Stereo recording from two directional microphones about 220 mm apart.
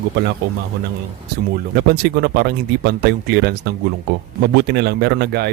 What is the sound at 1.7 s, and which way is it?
Speech, 45° right (ahead or behind).